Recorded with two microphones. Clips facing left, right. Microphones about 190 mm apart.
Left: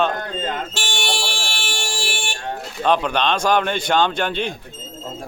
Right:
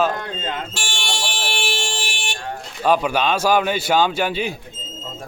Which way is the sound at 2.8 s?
5° right (ahead or behind).